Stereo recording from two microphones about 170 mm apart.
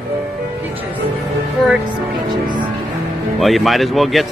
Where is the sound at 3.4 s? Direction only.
Centre (ahead or behind).